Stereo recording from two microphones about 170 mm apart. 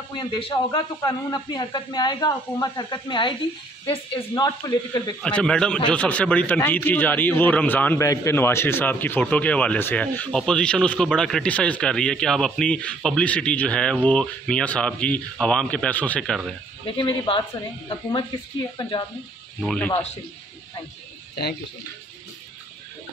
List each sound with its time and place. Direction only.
0.1 s a man's voice: 25° left (ahead or behind)
5.2 s a man's voice: 5° left (ahead or behind)
16.8 s speech: 30° left (ahead or behind)
18.8 s a man's voice: 30° left (ahead or behind)
19.6 s a man's voice: 5° left (ahead or behind)
19.9 s speech: 40° left (ahead or behind)